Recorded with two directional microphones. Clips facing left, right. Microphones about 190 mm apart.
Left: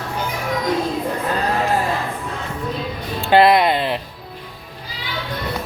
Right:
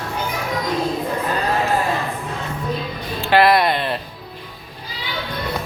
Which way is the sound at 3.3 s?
20° left (ahead or behind).